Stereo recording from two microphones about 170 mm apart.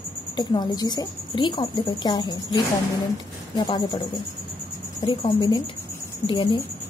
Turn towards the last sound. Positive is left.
turn(degrees=30)  # may be behind; listen again after turning